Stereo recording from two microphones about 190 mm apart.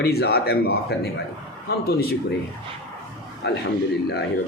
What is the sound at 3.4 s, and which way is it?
Speech, 60° left (ahead or behind).